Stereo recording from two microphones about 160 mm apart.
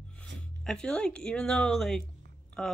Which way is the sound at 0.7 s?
5° left (ahead or behind).